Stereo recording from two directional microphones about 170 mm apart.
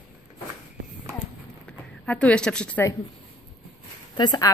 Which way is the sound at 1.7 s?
5° left (ahead or behind).